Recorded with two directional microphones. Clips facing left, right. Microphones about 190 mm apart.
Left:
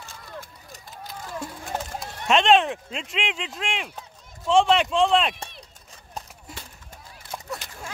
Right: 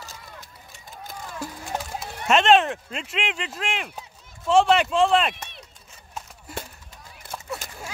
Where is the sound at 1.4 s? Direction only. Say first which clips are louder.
Right 2 dB; 5° right (ahead or behind).